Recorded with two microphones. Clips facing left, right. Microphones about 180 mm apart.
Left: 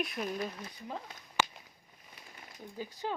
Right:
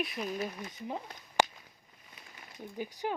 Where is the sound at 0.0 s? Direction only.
Centre (ahead or behind).